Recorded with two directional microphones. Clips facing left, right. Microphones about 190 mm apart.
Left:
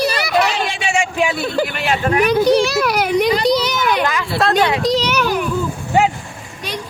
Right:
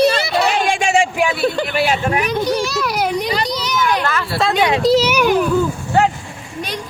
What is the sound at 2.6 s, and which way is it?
Children playing, 60° left (ahead or behind).